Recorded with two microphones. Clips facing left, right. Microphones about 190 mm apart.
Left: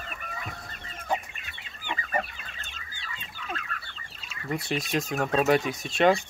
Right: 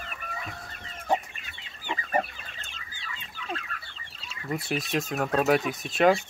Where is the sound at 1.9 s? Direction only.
30° right (ahead or behind).